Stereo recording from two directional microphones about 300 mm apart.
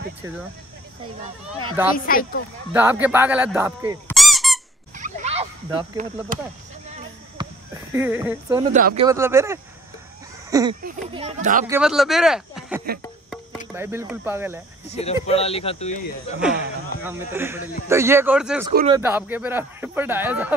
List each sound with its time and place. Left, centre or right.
1.6 s speech: centre
2.0 s speech: left
2.7 s speech: centre
4.9 s fowl: right
7.9 s speech: centre
8.7 s speech: right
9.0 s speech: centre
10.8 s speech: right
11.6 s speech: centre
14.9 s speech: left
17.0 s speech: centre